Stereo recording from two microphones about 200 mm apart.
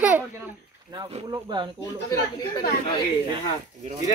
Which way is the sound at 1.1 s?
25° right (ahead or behind).